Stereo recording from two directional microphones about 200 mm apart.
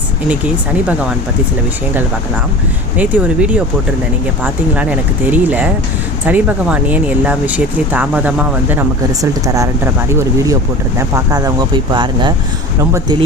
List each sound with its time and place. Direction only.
0.3 s speech: 5° right (ahead or behind)
3.0 s speech: 10° right (ahead or behind)